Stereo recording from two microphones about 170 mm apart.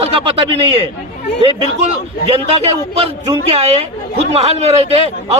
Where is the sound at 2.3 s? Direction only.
35° right (ahead or behind).